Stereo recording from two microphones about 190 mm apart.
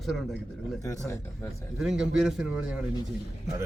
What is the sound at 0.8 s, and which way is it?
Speech, 15° left (ahead or behind).